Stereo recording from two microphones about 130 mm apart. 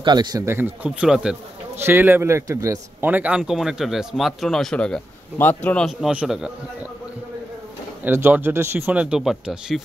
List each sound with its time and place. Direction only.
0.0 s a man's voice: 35° right (ahead or behind); by 0.9 s 15° right (ahead or behind)
1.0 s speech: 5° right (ahead or behind)
1.8 s a man's voice: 20° right (ahead or behind)
3.1 s speech: 10° right (ahead or behind); by 5.9 s 10° left (ahead or behind)
5.9 s speech: 5° right (ahead or behind)
8.0 s speech: 15° right (ahead or behind)